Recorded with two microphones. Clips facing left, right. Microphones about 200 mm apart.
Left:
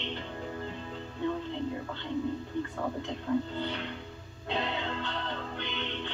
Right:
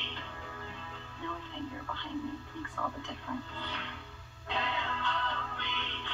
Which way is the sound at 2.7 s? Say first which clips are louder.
Left 5 dB; 25° left (ahead or behind).